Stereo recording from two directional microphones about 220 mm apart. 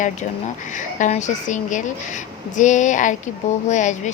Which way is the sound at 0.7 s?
35° left (ahead or behind).